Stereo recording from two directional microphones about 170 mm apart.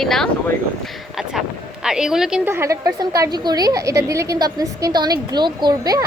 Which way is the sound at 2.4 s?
15° right (ahead or behind).